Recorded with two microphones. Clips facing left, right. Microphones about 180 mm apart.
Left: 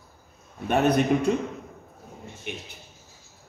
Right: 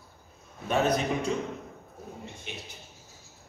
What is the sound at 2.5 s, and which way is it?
Speech, 60° left (ahead or behind).